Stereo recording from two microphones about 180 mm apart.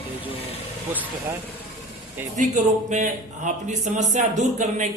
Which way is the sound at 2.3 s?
45° right (ahead or behind).